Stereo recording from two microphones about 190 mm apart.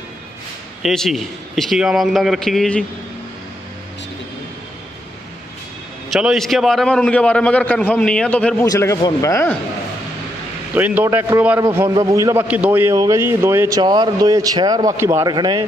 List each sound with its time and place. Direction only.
0.8 s a man's voice: centre (ahead or behind)
6.1 s a man's voice: centre (ahead or behind)
8.6 s speech: 15° left (ahead or behind)
10.7 s a man's voice: 10° right (ahead or behind)